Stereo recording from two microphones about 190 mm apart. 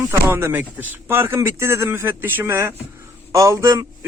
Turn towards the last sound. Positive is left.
turn(degrees=-15)  # may be behind; listen again after turning